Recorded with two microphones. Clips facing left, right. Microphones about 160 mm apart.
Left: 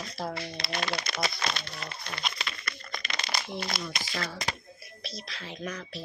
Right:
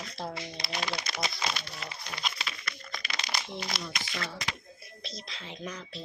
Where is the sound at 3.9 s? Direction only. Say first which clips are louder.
Left 2 dB; 35° left (ahead or behind).